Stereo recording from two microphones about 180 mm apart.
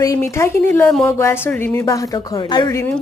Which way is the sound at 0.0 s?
15° left (ahead or behind).